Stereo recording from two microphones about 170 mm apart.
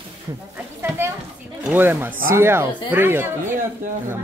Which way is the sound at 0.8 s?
15° right (ahead or behind).